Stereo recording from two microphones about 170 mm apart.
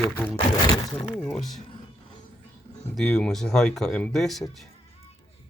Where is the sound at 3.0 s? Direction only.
5° left (ahead or behind).